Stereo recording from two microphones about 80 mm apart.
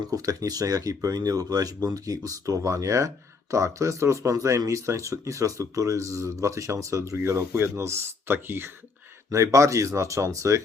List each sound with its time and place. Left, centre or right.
0.1 s speech: right
9.3 s speech: right